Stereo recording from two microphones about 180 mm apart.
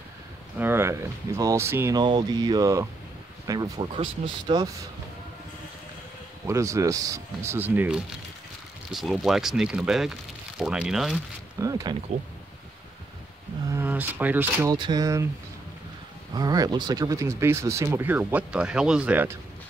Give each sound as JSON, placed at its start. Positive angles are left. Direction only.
{"t": 0.6, "sound": "speech", "side_deg": -15}
{"t": 6.4, "sound": "speech", "side_deg": -15}
{"t": 11.6, "sound": "speech", "side_deg": -20}
{"t": 13.7, "sound": "speech", "side_deg": -10}
{"t": 16.3, "sound": "speech", "side_deg": -20}